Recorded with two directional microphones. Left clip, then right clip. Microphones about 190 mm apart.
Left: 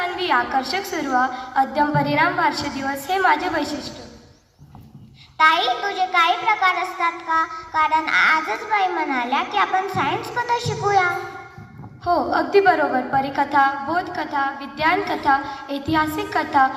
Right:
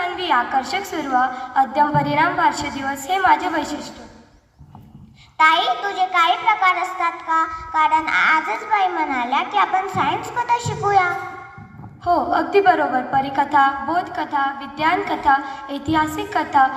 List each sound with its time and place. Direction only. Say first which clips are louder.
0.0 s a child's voice: right 1 dB; 15° right (ahead or behind)
5.4 s a child's voice: right 1 dB; 15° right (ahead or behind)